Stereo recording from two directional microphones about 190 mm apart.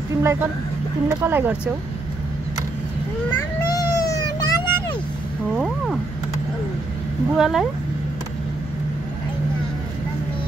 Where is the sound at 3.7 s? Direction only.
20° left (ahead or behind).